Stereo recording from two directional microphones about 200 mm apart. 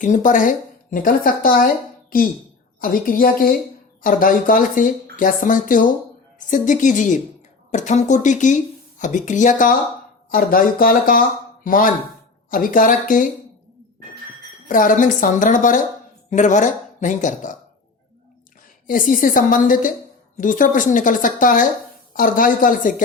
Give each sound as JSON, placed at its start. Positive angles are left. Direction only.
{"t": 0.0, "sound": "speech", "side_deg": 40}
{"t": 14.7, "sound": "speech", "side_deg": 40}
{"t": 18.9, "sound": "speech", "side_deg": 40}